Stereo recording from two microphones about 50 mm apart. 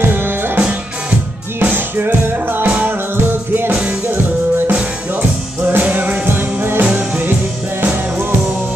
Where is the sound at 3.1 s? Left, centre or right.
Right.